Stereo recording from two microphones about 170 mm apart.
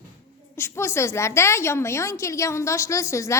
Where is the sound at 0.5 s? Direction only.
15° left (ahead or behind).